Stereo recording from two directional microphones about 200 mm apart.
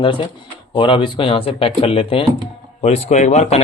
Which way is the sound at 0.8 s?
25° left (ahead or behind).